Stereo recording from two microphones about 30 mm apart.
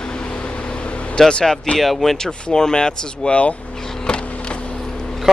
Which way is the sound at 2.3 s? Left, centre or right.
Left.